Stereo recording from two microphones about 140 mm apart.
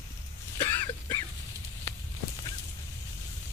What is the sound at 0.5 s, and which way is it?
Throat clearing, 40° left (ahead or behind).